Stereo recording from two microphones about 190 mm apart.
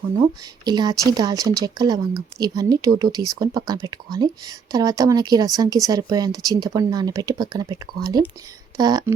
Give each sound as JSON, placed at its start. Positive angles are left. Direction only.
{"t": 0.2, "sound": "speech", "side_deg": -20}